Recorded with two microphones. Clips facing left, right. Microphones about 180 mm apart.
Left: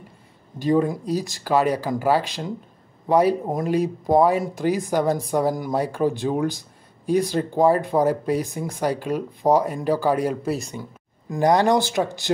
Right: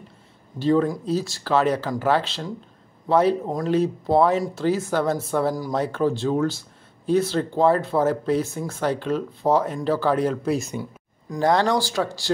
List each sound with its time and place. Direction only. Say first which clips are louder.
0.6 s speech: even; 15° left (ahead or behind)
11.4 s speech: left 2 dB; 15° left (ahead or behind)